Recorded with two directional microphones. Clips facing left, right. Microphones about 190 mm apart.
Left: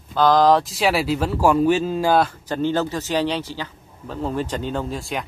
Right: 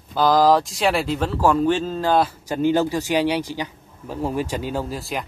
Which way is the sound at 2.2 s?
10° right (ahead or behind).